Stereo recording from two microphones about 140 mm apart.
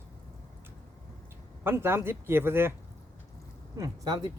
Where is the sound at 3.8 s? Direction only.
30° right (ahead or behind).